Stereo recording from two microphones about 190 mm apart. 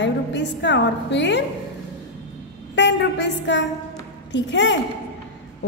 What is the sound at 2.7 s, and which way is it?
A woman's voice, 65° left (ahead or behind).